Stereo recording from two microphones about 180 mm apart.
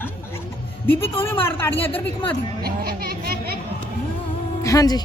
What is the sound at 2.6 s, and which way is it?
Chatter, 60° right (ahead or behind).